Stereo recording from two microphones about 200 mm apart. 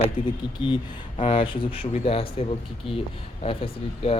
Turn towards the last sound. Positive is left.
turn(degrees=30)  # may be behind; listen again after turning